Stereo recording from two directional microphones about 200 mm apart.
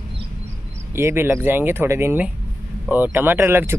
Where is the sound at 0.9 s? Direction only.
10° right (ahead or behind).